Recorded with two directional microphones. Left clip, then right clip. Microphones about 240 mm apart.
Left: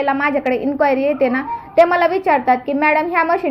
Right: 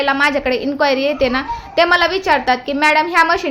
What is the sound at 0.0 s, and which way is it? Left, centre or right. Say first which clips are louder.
A woman's voice: right 2 dB; centre.